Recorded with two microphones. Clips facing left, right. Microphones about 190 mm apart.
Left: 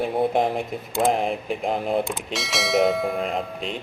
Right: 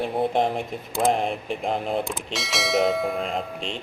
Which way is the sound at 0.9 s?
Centre (ahead or behind).